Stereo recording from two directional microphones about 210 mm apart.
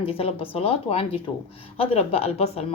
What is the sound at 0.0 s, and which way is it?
A woman's voice, 25° left (ahead or behind).